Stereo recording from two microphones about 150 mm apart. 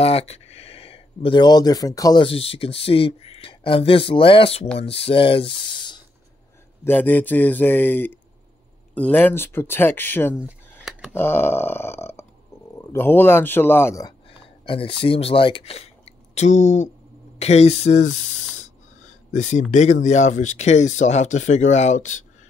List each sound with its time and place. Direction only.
0.0 s speech: 40° left (ahead or behind); by 2.2 s 25° left (ahead or behind)
2.2 s speech: 40° left (ahead or behind)
6.8 s a man's voice: 10° left (ahead or behind)
10.4 s a sound: 5° right (ahead or behind)
11.1 s a man's voice: 15° left (ahead or behind)
14.6 s speech: 35° left (ahead or behind)
19.3 s speech: 50° left (ahead or behind)